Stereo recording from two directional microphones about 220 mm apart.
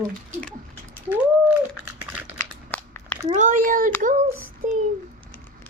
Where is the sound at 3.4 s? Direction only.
35° right (ahead or behind).